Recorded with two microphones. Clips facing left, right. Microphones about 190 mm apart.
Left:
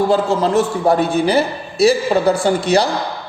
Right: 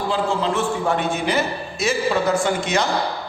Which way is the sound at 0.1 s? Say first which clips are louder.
Left 6 dB; 40° left (ahead or behind).